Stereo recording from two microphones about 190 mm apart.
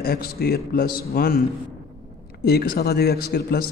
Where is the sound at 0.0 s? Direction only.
55° left (ahead or behind).